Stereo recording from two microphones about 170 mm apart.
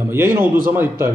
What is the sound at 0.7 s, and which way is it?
Speech, 15° right (ahead or behind).